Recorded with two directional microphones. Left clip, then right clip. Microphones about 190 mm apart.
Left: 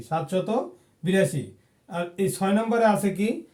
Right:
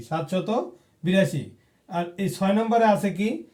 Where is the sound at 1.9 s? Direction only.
15° left (ahead or behind).